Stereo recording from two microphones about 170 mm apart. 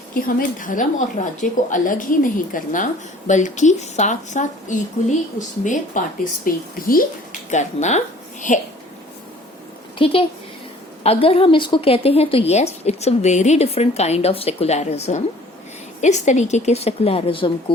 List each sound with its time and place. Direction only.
0.1 s speech: 55° left (ahead or behind)
6.0 s speech: 50° left (ahead or behind)
7.5 s a woman's voice: 45° left (ahead or behind)
10.0 s a woman's voice: 30° left (ahead or behind)